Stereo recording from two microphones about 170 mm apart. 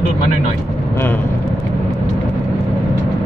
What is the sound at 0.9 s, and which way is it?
Speech, 10° left (ahead or behind).